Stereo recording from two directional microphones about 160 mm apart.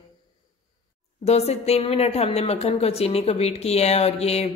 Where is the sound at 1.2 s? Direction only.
40° left (ahead or behind).